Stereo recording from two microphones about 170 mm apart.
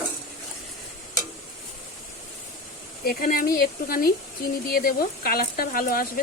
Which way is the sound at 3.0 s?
60° left (ahead or behind).